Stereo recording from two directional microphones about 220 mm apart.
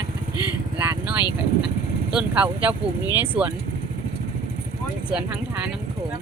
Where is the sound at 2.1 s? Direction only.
5° right (ahead or behind).